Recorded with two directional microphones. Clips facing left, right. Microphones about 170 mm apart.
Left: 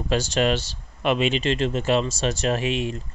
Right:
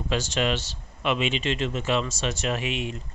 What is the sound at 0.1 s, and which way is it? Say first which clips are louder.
Speech: left 4 dB; 40° left (ahead or behind).